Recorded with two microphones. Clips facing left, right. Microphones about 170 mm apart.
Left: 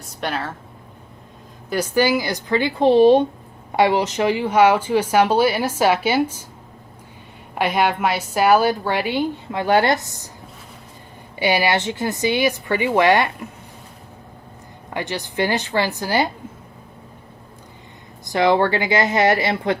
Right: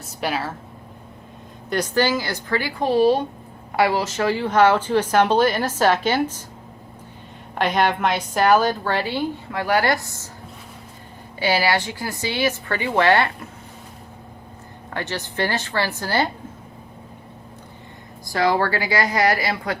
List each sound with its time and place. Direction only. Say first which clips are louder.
0.0 s a woman's voice: right 1 dB; 5° right (ahead or behind)
1.7 s a woman's voice: left 2 dB; 10° left (ahead or behind)
7.5 s a woman's voice: left 1 dB; 10° left (ahead or behind)
11.3 s a woman's voice: left 2 dB; 15° left (ahead or behind)
14.9 s a woman's voice: left 2 dB; 15° left (ahead or behind)
18.3 s a woman's voice: left 3 dB; 20° left (ahead or behind)